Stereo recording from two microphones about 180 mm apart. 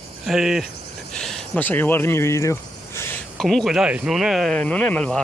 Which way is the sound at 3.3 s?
Centre (ahead or behind).